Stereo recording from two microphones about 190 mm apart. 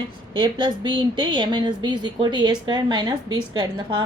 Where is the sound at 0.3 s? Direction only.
25° right (ahead or behind).